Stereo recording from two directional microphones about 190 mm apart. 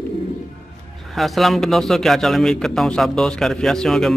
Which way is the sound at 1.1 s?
Centre (ahead or behind).